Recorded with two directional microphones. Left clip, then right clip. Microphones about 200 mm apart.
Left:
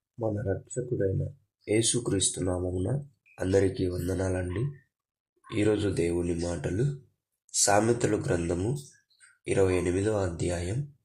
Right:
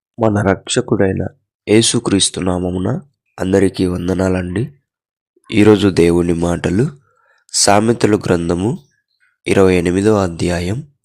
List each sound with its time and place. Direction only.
0.2 s speech: 45° right (ahead or behind)